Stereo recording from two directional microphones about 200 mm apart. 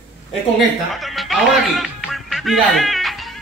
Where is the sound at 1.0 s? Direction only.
Centre (ahead or behind).